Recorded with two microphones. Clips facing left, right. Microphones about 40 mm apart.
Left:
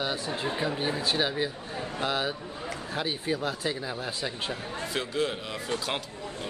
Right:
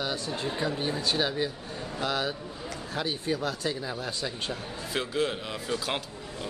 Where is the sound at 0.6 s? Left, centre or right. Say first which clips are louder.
Right 1 dB; centre.